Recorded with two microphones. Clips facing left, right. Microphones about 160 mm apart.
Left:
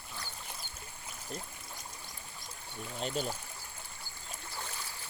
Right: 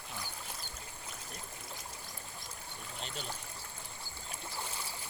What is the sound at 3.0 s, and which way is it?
Speech, 45° left (ahead or behind).